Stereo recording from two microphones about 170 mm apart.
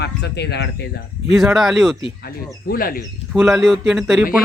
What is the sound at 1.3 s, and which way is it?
Speech, centre (ahead or behind).